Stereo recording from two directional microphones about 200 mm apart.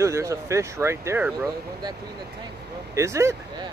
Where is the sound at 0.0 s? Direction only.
15° right (ahead or behind).